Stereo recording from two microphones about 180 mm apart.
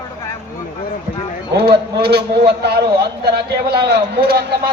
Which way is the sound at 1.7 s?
60° right (ahead or behind).